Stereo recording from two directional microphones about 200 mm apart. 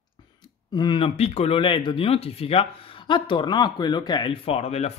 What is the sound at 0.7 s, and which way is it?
Speech, 25° left (ahead or behind).